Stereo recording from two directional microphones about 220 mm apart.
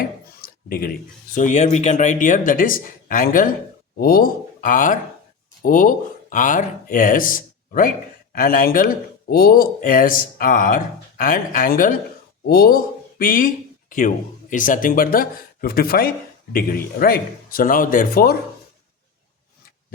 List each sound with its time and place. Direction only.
0.0 s a man's voice: 40° left (ahead or behind)
14.5 s speech: 35° left (ahead or behind)